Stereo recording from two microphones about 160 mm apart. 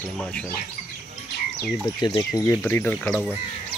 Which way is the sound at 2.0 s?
25° left (ahead or behind).